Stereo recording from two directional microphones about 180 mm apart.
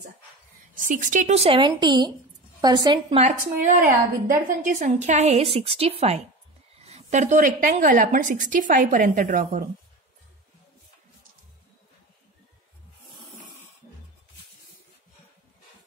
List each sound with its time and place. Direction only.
0.7 s a woman's voice: 45° right (ahead or behind); by 3.3 s 25° right (ahead or behind)
3.8 s a woman's voice: 50° right (ahead or behind)